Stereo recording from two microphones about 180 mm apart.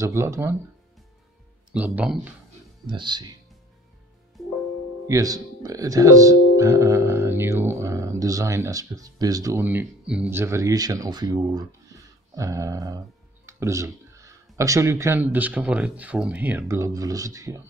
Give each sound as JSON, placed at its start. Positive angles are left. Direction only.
{"t": 0.0, "sound": "speech", "side_deg": -15}
{"t": 1.7, "sound": "speech", "side_deg": -5}
{"t": 2.9, "sound": "speech", "side_deg": -25}
{"t": 5.0, "sound": "speech", "side_deg": -20}